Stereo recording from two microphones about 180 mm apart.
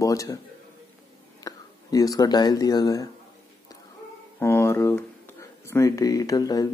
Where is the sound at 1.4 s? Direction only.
20° left (ahead or behind).